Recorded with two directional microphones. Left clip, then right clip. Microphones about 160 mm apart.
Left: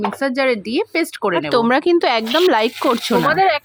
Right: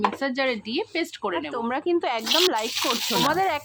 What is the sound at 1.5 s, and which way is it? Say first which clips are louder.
Speech: left 13 dB; 60° left (ahead or behind).